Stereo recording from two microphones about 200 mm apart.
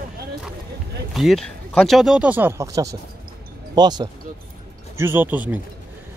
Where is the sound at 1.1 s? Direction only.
Centre (ahead or behind).